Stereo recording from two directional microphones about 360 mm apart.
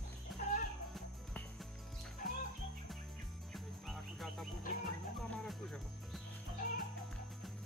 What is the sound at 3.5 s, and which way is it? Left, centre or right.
Music, centre.